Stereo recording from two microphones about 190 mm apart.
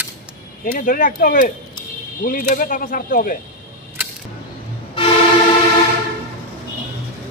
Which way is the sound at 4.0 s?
10° right (ahead or behind).